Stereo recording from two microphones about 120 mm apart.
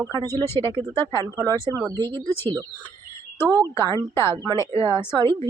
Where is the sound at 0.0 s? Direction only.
30° right (ahead or behind).